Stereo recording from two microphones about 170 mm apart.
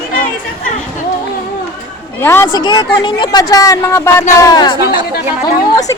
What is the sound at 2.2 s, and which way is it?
Speech, 15° left (ahead or behind).